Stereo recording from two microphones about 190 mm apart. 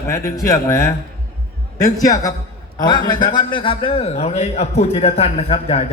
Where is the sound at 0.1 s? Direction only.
15° left (ahead or behind).